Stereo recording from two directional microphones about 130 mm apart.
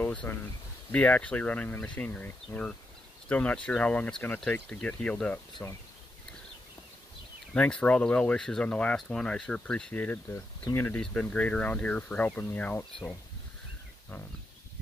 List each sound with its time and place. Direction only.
0.0 s speech: 15° left (ahead or behind)
5.5 s speech: 25° left (ahead or behind)
7.5 s speech: 10° left (ahead or behind)